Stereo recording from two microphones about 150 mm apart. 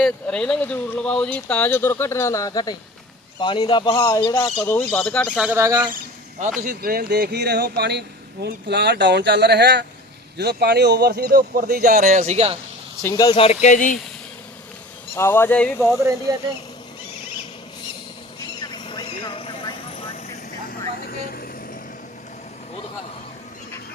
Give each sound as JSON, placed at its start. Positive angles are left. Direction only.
{"t": 0.0, "sound": "speech", "side_deg": 5}
{"t": 5.4, "sound": "speech", "side_deg": -15}
{"t": 6.6, "sound": "speech", "side_deg": -70}
{"t": 13.0, "sound": "speech", "side_deg": 20}
{"t": 13.3, "sound": "speech", "side_deg": 45}
{"t": 15.1, "sound": "speech", "side_deg": 15}
{"t": 18.7, "sound": "vehicle", "side_deg": 30}
{"t": 20.7, "sound": "vehicle", "side_deg": 80}